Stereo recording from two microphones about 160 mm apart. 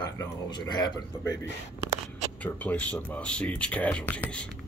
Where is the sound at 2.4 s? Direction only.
10° left (ahead or behind).